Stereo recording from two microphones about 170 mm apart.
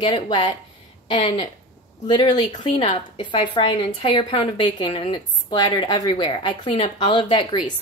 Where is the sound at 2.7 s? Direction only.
40° left (ahead or behind).